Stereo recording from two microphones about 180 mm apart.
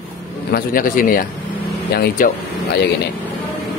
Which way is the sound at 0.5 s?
50° left (ahead or behind).